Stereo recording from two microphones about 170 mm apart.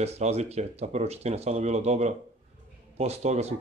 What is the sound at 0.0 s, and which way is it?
Speech, 40° right (ahead or behind).